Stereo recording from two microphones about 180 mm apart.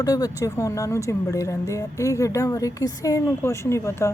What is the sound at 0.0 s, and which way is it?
Speech, 20° left (ahead or behind).